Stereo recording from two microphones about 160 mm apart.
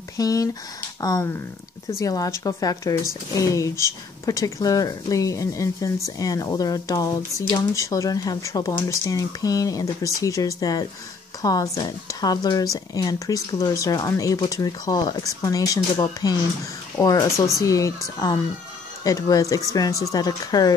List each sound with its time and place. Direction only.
0.2 s speech: 20° left (ahead or behind)